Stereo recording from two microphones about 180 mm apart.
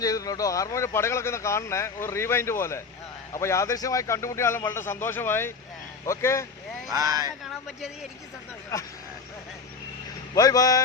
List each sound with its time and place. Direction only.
0.0 s speech: 20° left (ahead or behind)
6.9 s speech: 20° right (ahead or behind)
7.4 s speech: centre (ahead or behind)
10.3 s speech: 20° left (ahead or behind)